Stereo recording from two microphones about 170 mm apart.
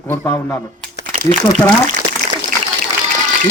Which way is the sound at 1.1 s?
40° right (ahead or behind).